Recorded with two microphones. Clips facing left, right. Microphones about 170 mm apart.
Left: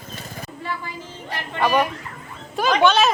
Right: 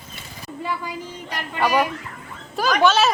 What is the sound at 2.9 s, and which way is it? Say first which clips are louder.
Speech: even; 5° right (ahead or behind).